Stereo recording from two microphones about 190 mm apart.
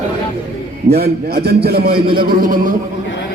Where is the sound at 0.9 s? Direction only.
55° right (ahead or behind).